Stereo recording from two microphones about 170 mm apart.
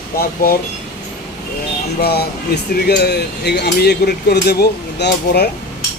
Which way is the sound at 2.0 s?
70° left (ahead or behind).